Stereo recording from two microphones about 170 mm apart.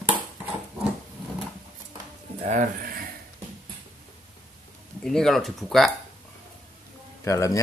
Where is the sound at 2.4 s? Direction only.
50° right (ahead or behind).